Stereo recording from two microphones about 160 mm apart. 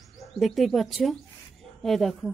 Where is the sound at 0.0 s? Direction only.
Centre (ahead or behind).